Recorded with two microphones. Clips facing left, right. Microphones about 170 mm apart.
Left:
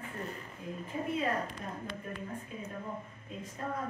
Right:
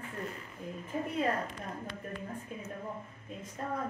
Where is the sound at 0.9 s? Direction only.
50° right (ahead or behind).